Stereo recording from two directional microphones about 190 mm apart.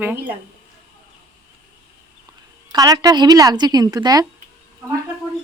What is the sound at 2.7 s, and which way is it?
Speech, 20° right (ahead or behind).